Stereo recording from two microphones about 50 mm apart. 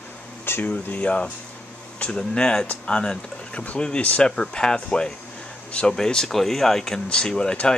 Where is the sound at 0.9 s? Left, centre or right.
Left.